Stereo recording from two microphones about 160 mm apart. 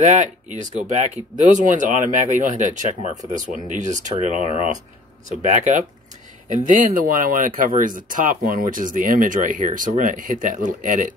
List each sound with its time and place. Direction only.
0.0 s speech: 50° right (ahead or behind)